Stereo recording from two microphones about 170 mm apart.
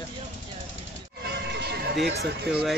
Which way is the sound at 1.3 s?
80° right.